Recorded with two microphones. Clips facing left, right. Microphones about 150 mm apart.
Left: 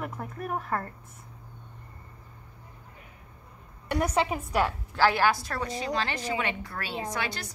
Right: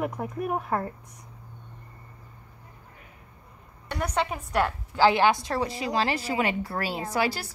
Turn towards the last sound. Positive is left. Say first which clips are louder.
# right 5 dB
turn(degrees=-35)  # may be behind; listen again after turning